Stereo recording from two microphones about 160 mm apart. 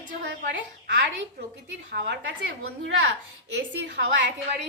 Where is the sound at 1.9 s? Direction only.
90° right.